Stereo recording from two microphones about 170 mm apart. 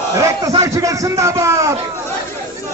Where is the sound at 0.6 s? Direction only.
20° right (ahead or behind).